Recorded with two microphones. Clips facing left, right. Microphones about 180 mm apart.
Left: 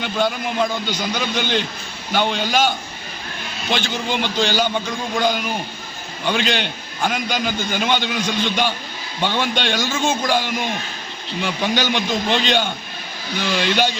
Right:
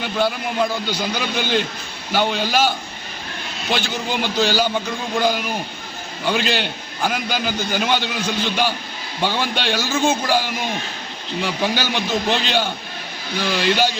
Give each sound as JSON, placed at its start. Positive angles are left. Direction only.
{"t": 0.0, "sound": "a man's voice", "side_deg": -5}